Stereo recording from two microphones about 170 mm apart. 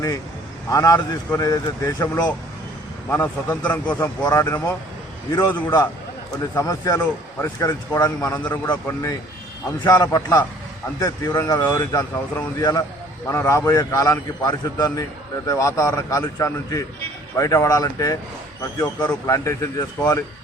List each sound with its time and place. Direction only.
0.7 s speech: 20° left (ahead or behind)
3.1 s speech: 10° left (ahead or behind)
3.9 s speech: 20° left (ahead or behind)
8.3 s speech: 10° left (ahead or behind)
9.8 s speech: 20° left (ahead or behind)